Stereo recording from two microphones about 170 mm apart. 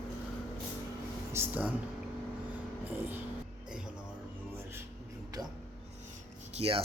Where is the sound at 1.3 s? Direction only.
10° right (ahead or behind).